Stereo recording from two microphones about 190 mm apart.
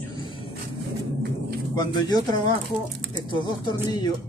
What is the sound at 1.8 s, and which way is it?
Speech, 20° left (ahead or behind).